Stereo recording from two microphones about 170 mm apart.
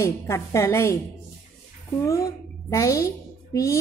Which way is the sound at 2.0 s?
20° left (ahead or behind).